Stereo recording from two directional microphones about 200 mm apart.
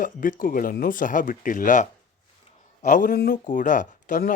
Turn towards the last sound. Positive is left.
turn(degrees=40)  # may be behind; listen again after turning